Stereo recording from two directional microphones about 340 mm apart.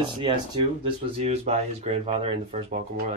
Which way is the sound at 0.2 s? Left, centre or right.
Centre.